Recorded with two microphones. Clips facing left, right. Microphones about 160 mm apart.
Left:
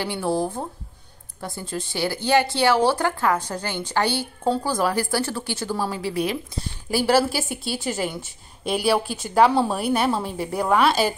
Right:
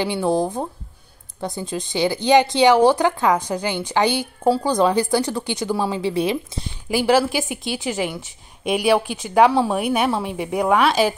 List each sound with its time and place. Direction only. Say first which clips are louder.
0.0 s speech: right 4 dB; 20° right (ahead or behind)
6.9 s speech: right 2 dB; 15° right (ahead or behind)
10.7 s a woman's voice: right 1 dB; centre (ahead or behind)